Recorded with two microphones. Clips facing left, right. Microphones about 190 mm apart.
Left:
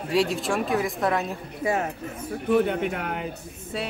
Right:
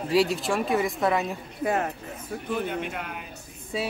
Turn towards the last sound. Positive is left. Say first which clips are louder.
# right 1 dB
turn(degrees=0)  # may be behind; listen again after turning